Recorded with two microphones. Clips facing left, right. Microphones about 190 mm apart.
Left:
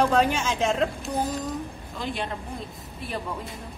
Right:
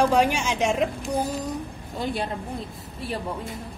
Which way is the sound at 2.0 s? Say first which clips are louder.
Right 3 dB; 40° right (ahead or behind).